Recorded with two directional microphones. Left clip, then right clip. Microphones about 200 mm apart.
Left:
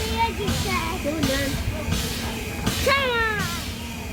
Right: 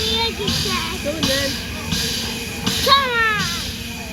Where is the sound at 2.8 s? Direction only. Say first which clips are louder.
Right 6 dB; 35° left (ahead or behind).